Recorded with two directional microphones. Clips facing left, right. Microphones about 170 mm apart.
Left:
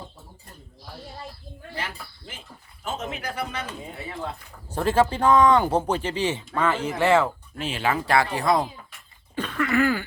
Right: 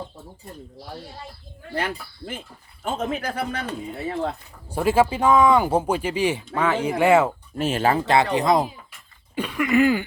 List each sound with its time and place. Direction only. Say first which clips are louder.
1.7 s speech: right 8 dB; 55° right (ahead or behind)
4.7 s speech: right 2 dB; 10° right (ahead or behind)
7.6 s speech: right 5 dB; 45° right (ahead or behind)
7.9 s speech: right 3 dB; 20° right (ahead or behind)